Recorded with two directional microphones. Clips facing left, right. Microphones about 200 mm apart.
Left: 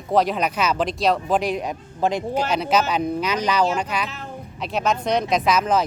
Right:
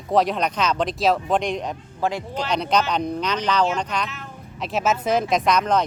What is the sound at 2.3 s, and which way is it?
Speech, 5° left (ahead or behind).